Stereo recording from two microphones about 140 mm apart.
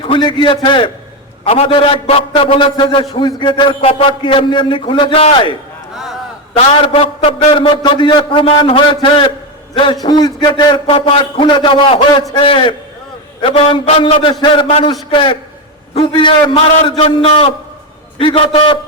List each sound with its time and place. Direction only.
0.1 s a man's voice: 35° left (ahead or behind)
6.8 s a man's voice: 45° left (ahead or behind)